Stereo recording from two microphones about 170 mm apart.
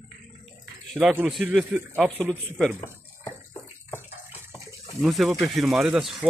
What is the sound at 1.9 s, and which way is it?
Speech, 5° left (ahead or behind).